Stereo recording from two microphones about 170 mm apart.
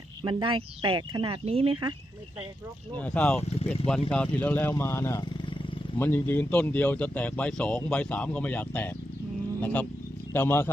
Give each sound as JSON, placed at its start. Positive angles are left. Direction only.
{"t": 0.2, "sound": "speech", "side_deg": -25}
{"t": 3.0, "sound": "speech", "side_deg": 5}